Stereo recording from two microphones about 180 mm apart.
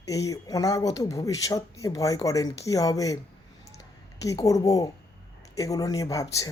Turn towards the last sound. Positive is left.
turn(degrees=20)  # may be behind; listen again after turning